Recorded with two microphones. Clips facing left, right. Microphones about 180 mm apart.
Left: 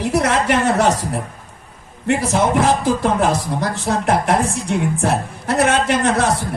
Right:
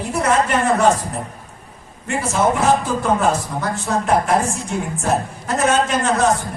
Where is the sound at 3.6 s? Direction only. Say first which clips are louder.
Left 2 dB; 35° left (ahead or behind).